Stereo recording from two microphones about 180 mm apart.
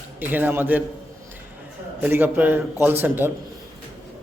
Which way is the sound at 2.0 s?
10° right (ahead or behind).